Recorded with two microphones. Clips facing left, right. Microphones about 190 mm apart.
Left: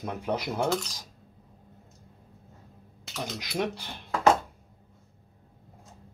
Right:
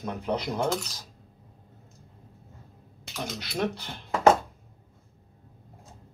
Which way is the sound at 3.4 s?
10° left (ahead or behind).